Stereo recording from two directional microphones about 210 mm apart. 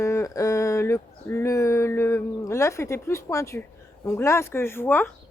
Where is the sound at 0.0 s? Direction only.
15° left (ahead or behind).